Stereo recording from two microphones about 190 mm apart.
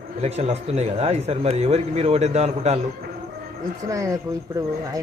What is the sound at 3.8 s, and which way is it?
Speech, 15° right (ahead or behind).